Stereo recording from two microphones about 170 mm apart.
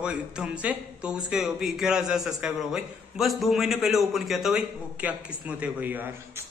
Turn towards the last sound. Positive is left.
turn(degrees=-10)  # may be behind; listen again after turning